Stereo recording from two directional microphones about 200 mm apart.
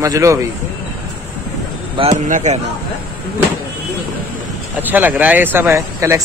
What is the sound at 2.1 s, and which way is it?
Speech, 40° right (ahead or behind).